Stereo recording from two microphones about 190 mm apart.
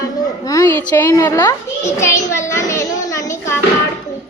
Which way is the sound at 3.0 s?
15° left (ahead or behind).